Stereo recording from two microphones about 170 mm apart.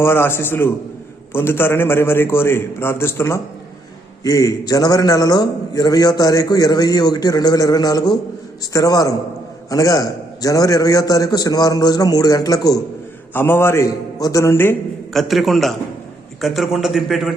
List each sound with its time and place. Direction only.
0.0 s a man's voice: 15° left (ahead or behind)
15.1 s a man's voice: centre (ahead or behind)